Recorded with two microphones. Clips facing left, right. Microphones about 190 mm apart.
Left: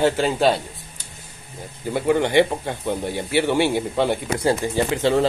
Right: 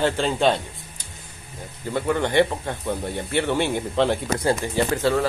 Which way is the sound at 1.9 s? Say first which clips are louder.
Left 3 dB; 10° left (ahead or behind).